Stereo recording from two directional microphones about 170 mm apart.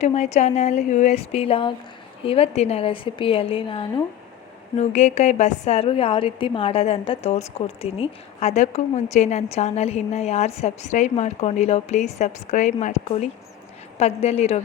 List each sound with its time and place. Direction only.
0.0 s a woman's voice: 40° left (ahead or behind)
4.8 s a woman's voice: 45° left (ahead or behind)